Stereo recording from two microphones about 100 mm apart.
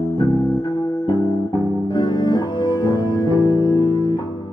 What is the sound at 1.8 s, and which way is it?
Music, 50° left (ahead or behind).